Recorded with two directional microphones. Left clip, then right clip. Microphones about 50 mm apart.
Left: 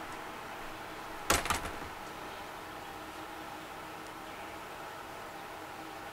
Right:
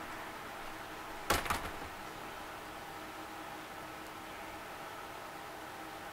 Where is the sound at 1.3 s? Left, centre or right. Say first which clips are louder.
Left 3 dB; left.